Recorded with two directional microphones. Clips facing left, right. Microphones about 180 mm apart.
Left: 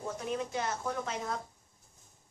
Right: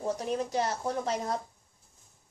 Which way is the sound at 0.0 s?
35° right (ahead or behind).